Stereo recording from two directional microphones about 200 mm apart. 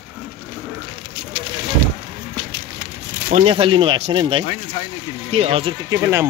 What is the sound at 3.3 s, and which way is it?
Speech, 30° right (ahead or behind).